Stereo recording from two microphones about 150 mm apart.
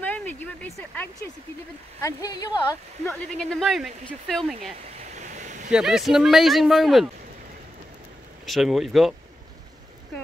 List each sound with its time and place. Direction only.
0.0 s a sound: 10° left (ahead or behind)
0.7 s speech: 10° left (ahead or behind)
2.0 s speech: 20° left (ahead or behind)
3.1 s speech: 5° left (ahead or behind)
5.0 s vehicle: 55° right (ahead or behind)
5.7 s speech: 5° right (ahead or behind)
8.5 s speech: centre (ahead or behind)